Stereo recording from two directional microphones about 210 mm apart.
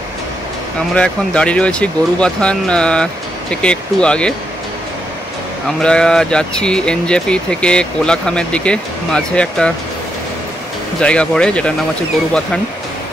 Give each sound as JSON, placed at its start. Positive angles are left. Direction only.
{"t": 0.9, "sound": "speech", "side_deg": 5}
{"t": 5.8, "sound": "speech", "side_deg": 5}
{"t": 11.0, "sound": "speech", "side_deg": 5}